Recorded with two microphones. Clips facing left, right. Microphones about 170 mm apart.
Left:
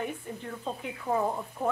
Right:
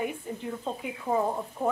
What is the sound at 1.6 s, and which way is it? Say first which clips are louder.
Speech: right 1 dB; 10° right (ahead or behind).